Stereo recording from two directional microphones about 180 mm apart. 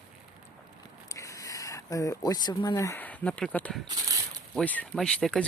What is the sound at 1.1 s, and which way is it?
Speech, 20° left (ahead or behind).